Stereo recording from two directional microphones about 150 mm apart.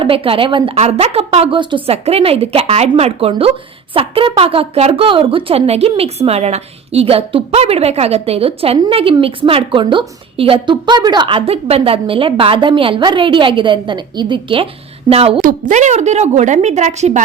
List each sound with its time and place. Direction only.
0.0 s a woman's voice: 35° right (ahead or behind)
15.4 s a woman's voice: 60° right (ahead or behind)